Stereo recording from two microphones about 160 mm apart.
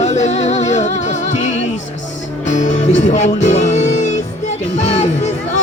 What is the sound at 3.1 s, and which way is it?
Music, 50° left (ahead or behind).